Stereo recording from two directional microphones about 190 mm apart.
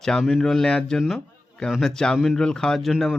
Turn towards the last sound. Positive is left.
turn(degrees=0)  # may be behind; listen again after turning